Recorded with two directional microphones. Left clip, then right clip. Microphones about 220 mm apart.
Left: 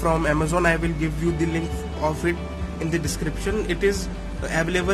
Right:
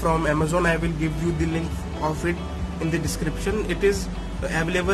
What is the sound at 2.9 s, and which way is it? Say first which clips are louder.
Speech: left 1 dB; 15° left (ahead or behind).